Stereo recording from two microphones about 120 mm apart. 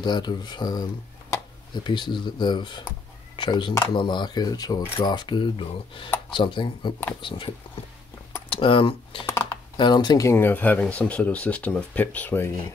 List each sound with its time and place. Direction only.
0.0 s speech: 40° left (ahead or behind)
9.2 s computer keyboard: 20° left (ahead or behind)
9.8 s speech: 40° left (ahead or behind)
10.3 s speech: 15° left (ahead or behind)